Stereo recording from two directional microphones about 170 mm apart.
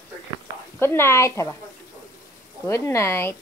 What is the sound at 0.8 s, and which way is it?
Speech, 15° left (ahead or behind).